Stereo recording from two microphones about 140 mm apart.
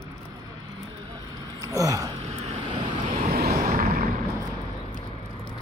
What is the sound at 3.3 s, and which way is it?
Vehicle, 90° right.